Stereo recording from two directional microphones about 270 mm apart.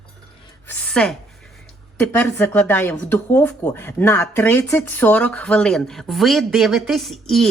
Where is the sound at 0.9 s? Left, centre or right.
Centre.